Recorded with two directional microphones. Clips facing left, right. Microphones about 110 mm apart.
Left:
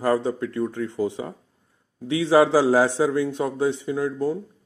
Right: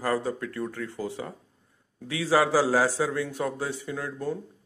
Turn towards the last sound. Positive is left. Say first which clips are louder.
# left 7 dB
turn(degrees=15)  # may be behind; listen again after turning